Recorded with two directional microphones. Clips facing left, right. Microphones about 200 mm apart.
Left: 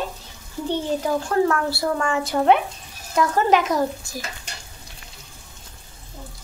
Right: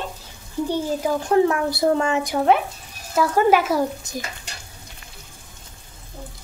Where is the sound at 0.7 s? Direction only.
15° right (ahead or behind).